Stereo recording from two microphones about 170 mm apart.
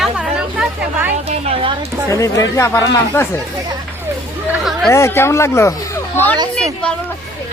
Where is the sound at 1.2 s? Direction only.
35° right (ahead or behind).